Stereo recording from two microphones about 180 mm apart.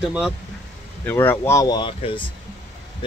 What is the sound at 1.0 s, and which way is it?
Speech, 10° left (ahead or behind).